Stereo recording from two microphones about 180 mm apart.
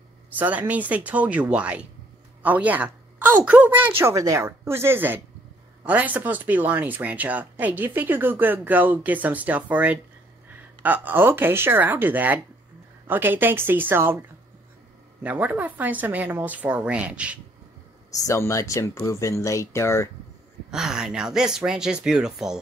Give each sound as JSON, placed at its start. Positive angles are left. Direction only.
{"t": 0.4, "sound": "speech", "side_deg": -10}
{"t": 15.2, "sound": "speech", "side_deg": -10}
{"t": 18.1, "sound": "speech", "side_deg": 15}
{"t": 20.7, "sound": "speech", "side_deg": -5}